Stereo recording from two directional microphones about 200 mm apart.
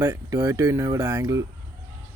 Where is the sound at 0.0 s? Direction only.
20° right (ahead or behind).